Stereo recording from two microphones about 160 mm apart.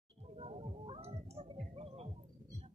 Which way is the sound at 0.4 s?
40° right (ahead or behind).